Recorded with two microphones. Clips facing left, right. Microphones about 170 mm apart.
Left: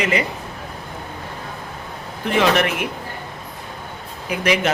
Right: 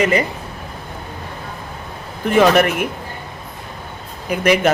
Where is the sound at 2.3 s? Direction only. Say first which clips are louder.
Right 5 dB; 45° right (ahead or behind).